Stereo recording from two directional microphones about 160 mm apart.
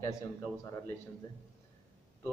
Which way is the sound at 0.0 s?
20° left (ahead or behind).